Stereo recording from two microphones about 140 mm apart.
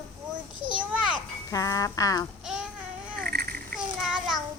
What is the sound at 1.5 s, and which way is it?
Speech, 25° left (ahead or behind).